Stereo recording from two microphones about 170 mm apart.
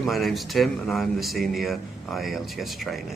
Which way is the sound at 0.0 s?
Centre (ahead or behind).